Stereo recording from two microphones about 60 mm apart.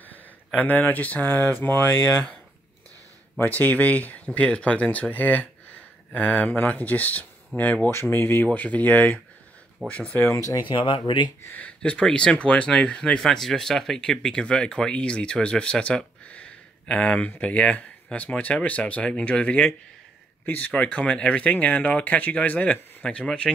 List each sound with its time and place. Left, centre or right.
0.6 s speech: left
1.6 s mantra: left
3.4 s speech: left
7.9 s speech: left
8.5 s speech: left
10.2 s speech: left
11.5 s speech: left
16.3 s a sound: left
17.4 s speech: left
20.7 s speech: centre
23.0 s speech: centre